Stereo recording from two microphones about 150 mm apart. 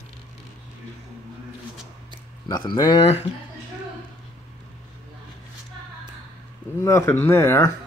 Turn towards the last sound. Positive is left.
turn(degrees=15)  # may be behind; listen again after turning